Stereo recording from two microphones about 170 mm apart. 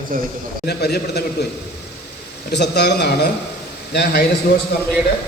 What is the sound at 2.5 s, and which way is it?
A man's voice, 80° left.